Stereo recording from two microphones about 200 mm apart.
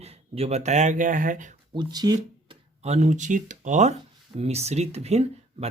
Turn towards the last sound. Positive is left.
turn(degrees=-30)  # may be behind; listen again after turning